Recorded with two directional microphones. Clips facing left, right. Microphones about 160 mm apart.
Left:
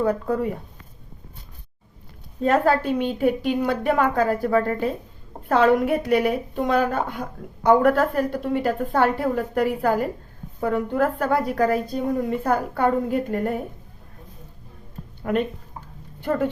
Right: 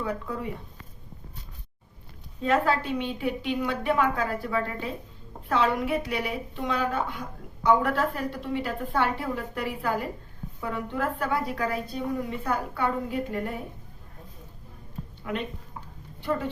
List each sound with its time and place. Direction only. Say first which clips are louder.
0.0 s a woman's voice: left 9 dB; 45° left (ahead or behind)
2.4 s a woman's voice: left 5 dB; 45° left (ahead or behind)
15.2 s speech: left 9 dB; 50° left (ahead or behind)